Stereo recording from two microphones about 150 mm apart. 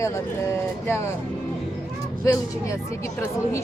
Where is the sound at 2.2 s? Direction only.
20° left (ahead or behind).